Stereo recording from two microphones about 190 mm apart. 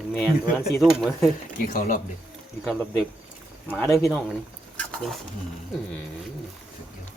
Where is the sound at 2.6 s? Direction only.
Centre (ahead or behind).